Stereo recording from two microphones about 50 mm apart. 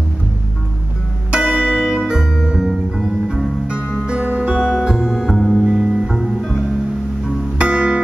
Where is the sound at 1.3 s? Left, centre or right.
Centre.